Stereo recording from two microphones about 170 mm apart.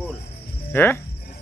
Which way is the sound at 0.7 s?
15° left (ahead or behind).